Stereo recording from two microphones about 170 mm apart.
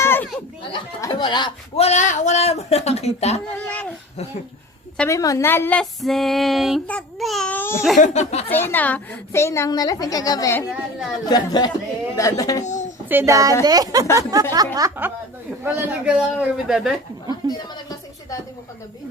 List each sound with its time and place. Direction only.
0.0 s children playing: 15° left (ahead or behind)
0.7 s speech: 25° left (ahead or behind)
3.7 s a sound: 10° left (ahead or behind)
5.0 s a woman's voice: 20° left (ahead or behind)
5.8 s a man's voice: centre (ahead or behind)
7.9 s speech: 45° left (ahead or behind)
8.4 s a woman's voice: 10° left (ahead or behind)
12.6 s speech: 45° left (ahead or behind)
13.1 s a man's voice: 15° right (ahead or behind)